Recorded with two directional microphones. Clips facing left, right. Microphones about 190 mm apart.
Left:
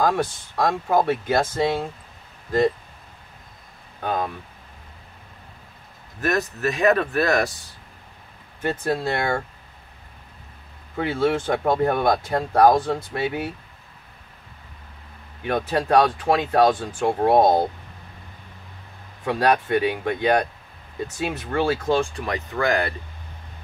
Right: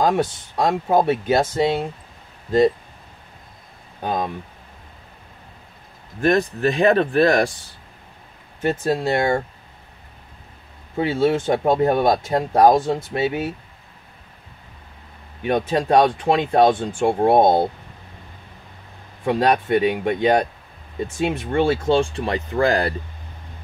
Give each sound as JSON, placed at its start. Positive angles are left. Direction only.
{"t": 0.0, "sound": "speech", "side_deg": -20}
{"t": 4.0, "sound": "speech", "side_deg": -15}
{"t": 6.2, "sound": "speech", "side_deg": -30}
{"t": 8.6, "sound": "speech", "side_deg": -25}
{"t": 11.0, "sound": "speech", "side_deg": -25}
{"t": 15.4, "sound": "speech", "side_deg": -20}
{"t": 19.2, "sound": "speech", "side_deg": -25}